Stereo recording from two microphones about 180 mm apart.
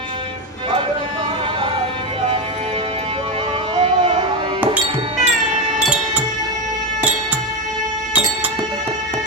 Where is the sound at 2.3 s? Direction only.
30° right (ahead or behind).